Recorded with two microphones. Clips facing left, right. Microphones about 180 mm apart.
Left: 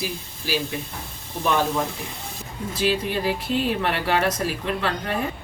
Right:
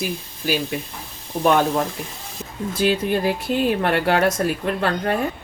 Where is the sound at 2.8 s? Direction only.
55° right (ahead or behind).